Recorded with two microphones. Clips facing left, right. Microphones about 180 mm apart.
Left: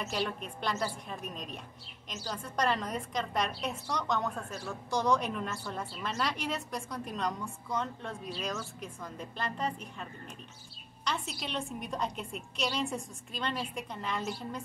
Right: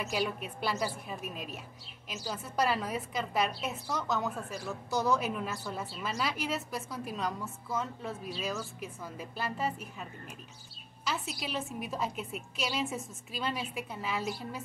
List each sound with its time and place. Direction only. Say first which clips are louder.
0.0 s a woman's voice: right 1 dB; 5° right (ahead or behind)
11.1 s a woman's voice: even; 5° right (ahead or behind)